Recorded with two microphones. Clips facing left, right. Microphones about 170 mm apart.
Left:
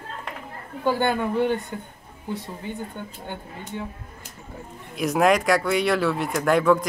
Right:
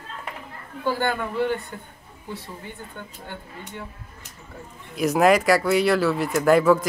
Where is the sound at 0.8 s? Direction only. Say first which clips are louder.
Left 2 dB; 20° left (ahead or behind).